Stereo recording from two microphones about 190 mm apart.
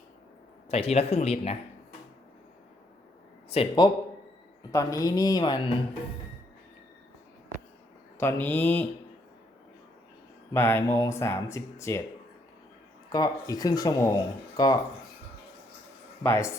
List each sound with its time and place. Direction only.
0.7 s speech: 35° left (ahead or behind)
3.5 s speech: 25° left (ahead or behind)
8.2 s speech: 10° left (ahead or behind)
10.5 s speech: 10° left (ahead or behind)
13.1 s speech: 20° left (ahead or behind)
16.2 s speech: 15° left (ahead or behind)